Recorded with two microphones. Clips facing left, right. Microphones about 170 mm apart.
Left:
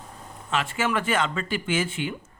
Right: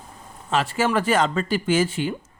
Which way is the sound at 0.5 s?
35° right (ahead or behind).